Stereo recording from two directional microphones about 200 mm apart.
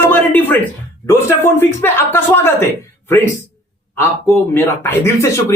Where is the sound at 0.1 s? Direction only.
10° left (ahead or behind).